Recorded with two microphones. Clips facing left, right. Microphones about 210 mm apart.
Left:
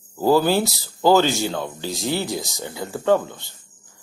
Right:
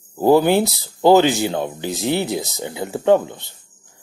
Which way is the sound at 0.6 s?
Centre (ahead or behind).